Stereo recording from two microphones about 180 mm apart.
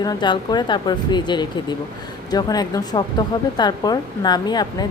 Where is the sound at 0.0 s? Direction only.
25° left (ahead or behind).